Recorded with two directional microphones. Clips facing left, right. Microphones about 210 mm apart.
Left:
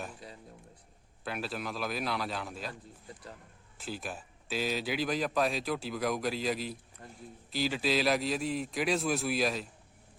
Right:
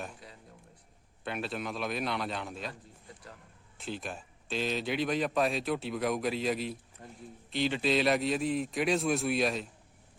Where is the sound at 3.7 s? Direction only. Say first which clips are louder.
Right 1 dB; centre (ahead or behind).